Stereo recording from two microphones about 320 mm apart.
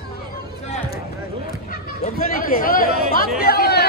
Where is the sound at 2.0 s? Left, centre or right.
Left.